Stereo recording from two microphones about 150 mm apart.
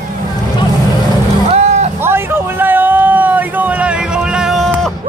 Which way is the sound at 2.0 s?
15° right (ahead or behind).